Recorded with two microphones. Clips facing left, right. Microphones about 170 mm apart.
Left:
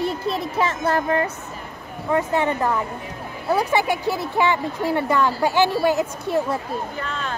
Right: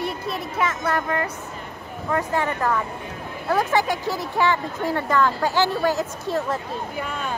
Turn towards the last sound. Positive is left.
turn(degrees=-10)  # may be behind; listen again after turning